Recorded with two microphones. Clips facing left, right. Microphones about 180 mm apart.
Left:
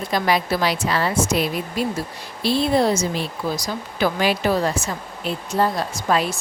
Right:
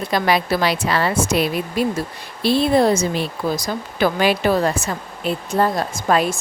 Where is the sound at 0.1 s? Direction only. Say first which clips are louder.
Right 2 dB; 65° right (ahead or behind).